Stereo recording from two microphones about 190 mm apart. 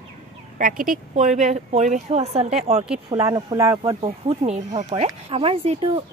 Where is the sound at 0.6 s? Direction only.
45° right (ahead or behind).